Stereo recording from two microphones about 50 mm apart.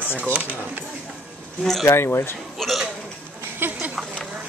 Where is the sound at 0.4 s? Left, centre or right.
Right.